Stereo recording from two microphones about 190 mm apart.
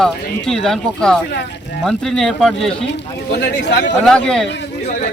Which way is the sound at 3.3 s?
65° left (ahead or behind).